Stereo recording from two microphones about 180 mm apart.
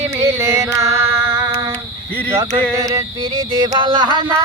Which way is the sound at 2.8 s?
15° right (ahead or behind).